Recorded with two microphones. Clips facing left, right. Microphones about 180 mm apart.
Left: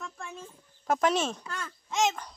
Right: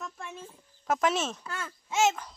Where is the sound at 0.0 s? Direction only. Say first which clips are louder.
Even; 5° right (ahead or behind).